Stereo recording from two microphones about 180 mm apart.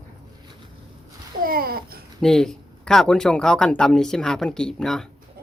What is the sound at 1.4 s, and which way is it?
Babbling, 55° right (ahead or behind).